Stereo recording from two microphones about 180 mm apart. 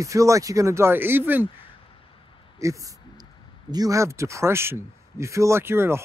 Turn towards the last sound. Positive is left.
turn(degrees=-15)  # may be behind; listen again after turning